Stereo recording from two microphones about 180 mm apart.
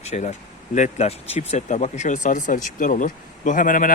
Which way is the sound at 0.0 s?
40° left (ahead or behind).